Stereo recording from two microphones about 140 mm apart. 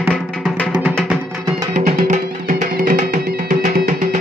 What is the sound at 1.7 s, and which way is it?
Music, 60° right (ahead or behind).